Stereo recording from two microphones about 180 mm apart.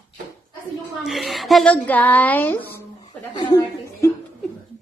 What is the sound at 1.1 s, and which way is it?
A woman's voice, centre (ahead or behind).